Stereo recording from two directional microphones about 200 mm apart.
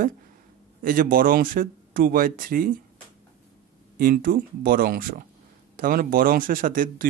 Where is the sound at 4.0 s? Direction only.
45° right (ahead or behind).